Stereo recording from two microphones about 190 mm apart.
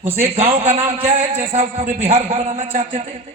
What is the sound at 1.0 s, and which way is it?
A man's voice, 35° right (ahead or behind).